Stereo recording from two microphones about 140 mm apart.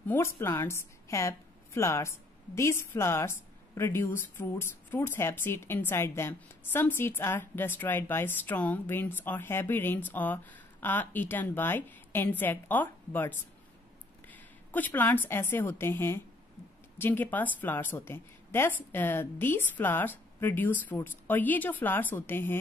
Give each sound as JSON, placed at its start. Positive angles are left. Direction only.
{"t": 0.1, "sound": "a woman's voice", "side_deg": 20}
{"t": 14.3, "sound": "a sound", "side_deg": 10}
{"t": 15.2, "sound": "a woman's voice", "side_deg": 15}